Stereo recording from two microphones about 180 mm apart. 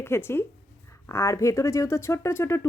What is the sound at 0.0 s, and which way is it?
Speech, 15° left (ahead or behind).